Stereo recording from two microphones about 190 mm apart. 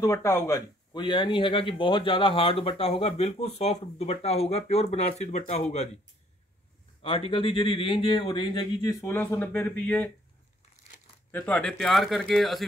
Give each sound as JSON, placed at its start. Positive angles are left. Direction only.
{"t": 0.0, "sound": "speech", "side_deg": 15}
{"t": 7.0, "sound": "speech", "side_deg": 30}
{"t": 9.0, "sound": "speech", "side_deg": 10}
{"t": 11.3, "sound": "speech", "side_deg": 5}